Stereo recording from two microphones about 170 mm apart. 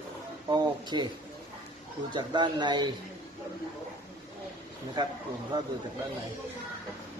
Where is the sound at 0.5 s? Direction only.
25° right (ahead or behind).